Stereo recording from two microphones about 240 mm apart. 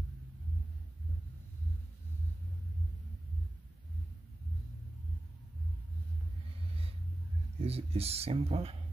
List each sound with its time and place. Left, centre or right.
7.6 s speech: right